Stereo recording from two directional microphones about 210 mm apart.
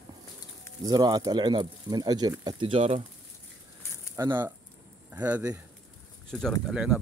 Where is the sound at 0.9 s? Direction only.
20° right (ahead or behind).